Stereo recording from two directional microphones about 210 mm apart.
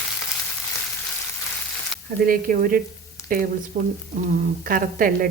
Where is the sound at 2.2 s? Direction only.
40° right (ahead or behind).